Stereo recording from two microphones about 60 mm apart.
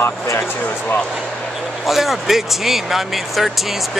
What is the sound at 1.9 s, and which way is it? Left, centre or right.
Speech, centre.